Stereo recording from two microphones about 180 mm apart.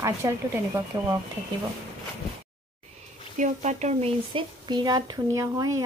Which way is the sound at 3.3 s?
40° right (ahead or behind).